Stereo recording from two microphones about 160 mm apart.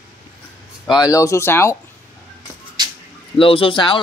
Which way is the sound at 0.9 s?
25° left (ahead or behind).